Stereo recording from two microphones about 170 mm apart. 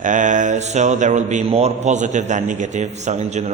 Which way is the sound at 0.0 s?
50° right (ahead or behind).